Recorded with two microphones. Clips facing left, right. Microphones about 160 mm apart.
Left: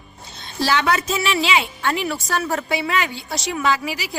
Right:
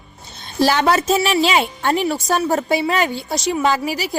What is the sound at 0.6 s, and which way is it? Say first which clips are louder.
A woman's voice: right 4 dB; 40° right (ahead or behind).